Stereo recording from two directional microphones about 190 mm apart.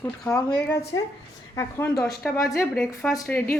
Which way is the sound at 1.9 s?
5° left (ahead or behind).